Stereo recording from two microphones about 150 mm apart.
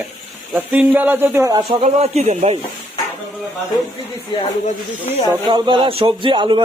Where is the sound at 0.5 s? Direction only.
10° right (ahead or behind).